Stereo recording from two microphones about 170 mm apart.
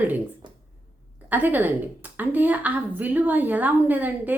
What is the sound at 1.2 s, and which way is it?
A woman's voice, 10° right (ahead or behind).